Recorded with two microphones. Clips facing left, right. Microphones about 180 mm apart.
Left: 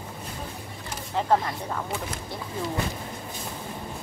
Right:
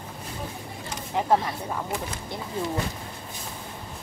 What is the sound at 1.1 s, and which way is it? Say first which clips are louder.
Speech: even; 10° right (ahead or behind).